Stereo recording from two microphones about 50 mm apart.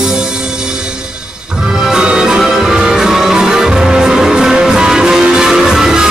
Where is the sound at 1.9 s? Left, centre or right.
Centre.